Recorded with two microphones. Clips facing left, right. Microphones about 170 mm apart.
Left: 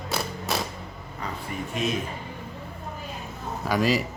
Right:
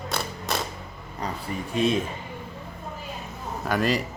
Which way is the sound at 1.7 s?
30° right (ahead or behind).